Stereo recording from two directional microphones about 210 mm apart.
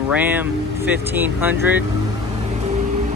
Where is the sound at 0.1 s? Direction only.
10° right (ahead or behind).